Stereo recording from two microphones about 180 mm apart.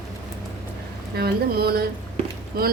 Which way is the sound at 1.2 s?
60° right (ahead or behind).